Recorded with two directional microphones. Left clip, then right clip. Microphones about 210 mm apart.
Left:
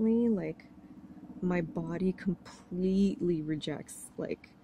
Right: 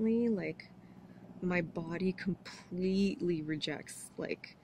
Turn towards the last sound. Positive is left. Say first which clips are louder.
# left 2 dB
turn(degrees=10)  # may be behind; listen again after turning